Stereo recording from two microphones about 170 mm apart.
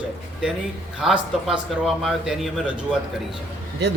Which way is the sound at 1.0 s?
5° right (ahead or behind).